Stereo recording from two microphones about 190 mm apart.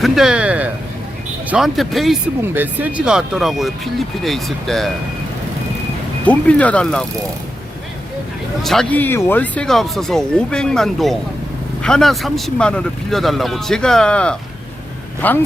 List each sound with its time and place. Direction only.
0.0 s speech: 5° right (ahead or behind)
2.4 s speech: 10° right (ahead or behind)
6.2 s speech: 5° left (ahead or behind)
8.6 s speech: centre (ahead or behind)